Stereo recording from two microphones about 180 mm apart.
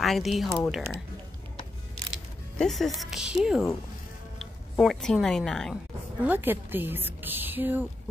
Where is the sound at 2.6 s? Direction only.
Centre (ahead or behind).